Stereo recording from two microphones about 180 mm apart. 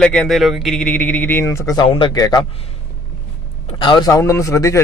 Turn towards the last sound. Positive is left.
turn(degrees=15)  # may be behind; listen again after turning